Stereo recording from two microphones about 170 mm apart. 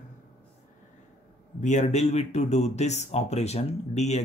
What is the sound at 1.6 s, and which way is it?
Speech, 45° left (ahead or behind).